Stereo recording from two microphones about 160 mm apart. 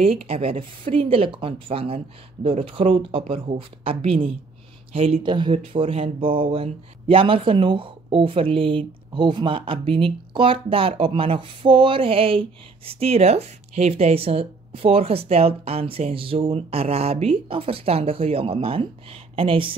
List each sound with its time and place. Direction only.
0.0 s speech: 35° right (ahead or behind)